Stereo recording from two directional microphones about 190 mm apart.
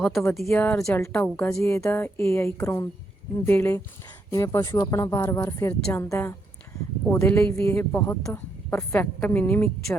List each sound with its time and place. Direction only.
0.0 s a woman's voice: centre (ahead or behind)